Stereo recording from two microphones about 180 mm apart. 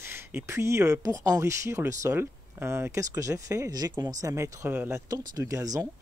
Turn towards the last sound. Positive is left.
turn(degrees=-20)  # may be behind; listen again after turning